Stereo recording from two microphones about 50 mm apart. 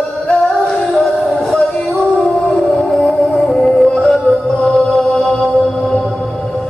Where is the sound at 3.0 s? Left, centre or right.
Centre.